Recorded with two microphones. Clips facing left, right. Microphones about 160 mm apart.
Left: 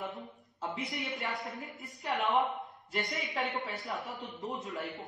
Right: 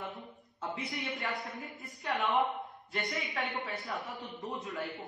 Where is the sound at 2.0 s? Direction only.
20° left (ahead or behind).